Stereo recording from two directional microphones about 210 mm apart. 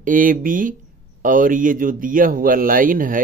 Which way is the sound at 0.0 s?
40° right (ahead or behind).